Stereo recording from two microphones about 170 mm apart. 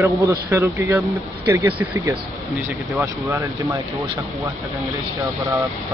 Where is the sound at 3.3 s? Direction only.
20° right (ahead or behind).